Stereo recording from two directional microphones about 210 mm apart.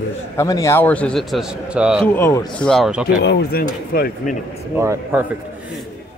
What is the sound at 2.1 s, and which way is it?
Speech, 10° left (ahead or behind).